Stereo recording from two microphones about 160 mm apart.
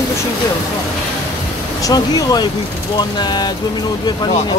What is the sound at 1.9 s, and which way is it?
Speech, 25° left (ahead or behind).